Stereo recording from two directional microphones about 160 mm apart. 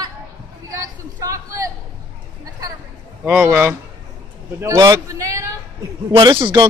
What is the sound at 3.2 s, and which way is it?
A man's voice, 5° right (ahead or behind).